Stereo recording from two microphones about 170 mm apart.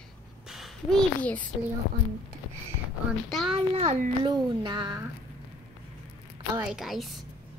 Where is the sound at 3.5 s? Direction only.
40° right (ahead or behind).